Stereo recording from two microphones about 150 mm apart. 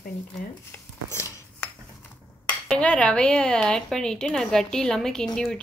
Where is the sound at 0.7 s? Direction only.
15° left (ahead or behind).